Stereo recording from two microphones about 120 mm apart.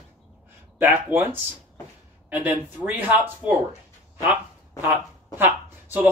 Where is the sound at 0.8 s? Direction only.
15° right (ahead or behind).